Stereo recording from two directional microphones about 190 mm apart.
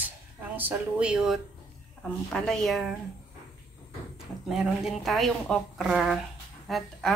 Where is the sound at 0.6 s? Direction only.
10° right (ahead or behind).